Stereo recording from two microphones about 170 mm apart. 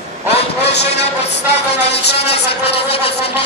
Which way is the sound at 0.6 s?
80° left.